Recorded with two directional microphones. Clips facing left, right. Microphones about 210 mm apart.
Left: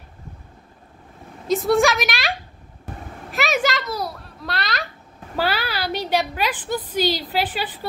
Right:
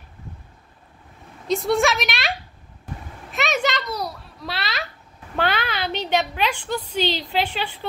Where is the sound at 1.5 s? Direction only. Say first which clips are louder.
Left 2 dB; centre (ahead or behind).